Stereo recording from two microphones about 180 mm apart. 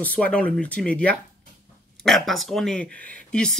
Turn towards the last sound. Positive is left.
turn(degrees=5)  # may be behind; listen again after turning